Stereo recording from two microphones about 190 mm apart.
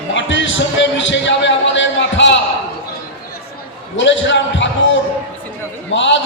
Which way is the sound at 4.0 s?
75° left (ahead or behind).